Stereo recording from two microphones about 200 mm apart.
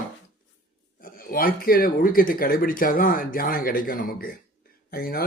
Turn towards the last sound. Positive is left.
turn(degrees=50)  # may be behind; listen again after turning